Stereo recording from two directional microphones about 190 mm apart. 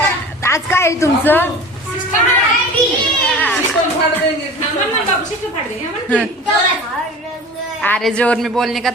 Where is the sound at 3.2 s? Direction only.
5° left (ahead or behind).